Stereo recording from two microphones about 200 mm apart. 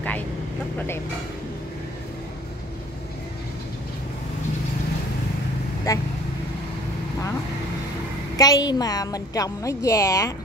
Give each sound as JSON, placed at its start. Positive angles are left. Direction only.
{"t": 0.7, "sound": "a woman's voice", "side_deg": 10}
{"t": 5.9, "sound": "a woman's voice", "side_deg": 15}
{"t": 8.4, "sound": "a woman's voice", "side_deg": 20}